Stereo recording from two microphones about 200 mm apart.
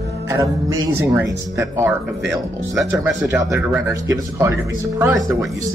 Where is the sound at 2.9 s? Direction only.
15° right (ahead or behind).